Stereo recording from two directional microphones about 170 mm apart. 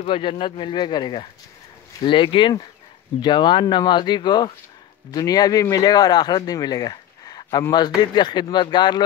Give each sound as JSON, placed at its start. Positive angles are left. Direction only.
{"t": 0.0, "sound": "speech", "side_deg": 30}